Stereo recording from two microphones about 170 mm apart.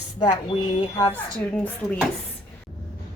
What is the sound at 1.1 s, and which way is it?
Speech, 10° left (ahead or behind).